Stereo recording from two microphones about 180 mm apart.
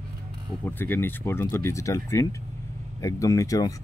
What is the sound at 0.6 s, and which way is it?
Speech, 10° left (ahead or behind).